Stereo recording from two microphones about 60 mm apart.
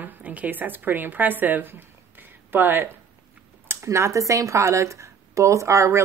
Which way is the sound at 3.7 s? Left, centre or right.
Right.